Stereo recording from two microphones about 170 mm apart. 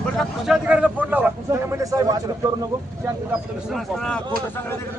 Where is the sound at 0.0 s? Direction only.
Centre (ahead or behind); by 2.0 s 20° right (ahead or behind).